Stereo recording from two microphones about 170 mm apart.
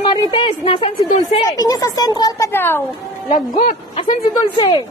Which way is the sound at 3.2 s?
50° left (ahead or behind).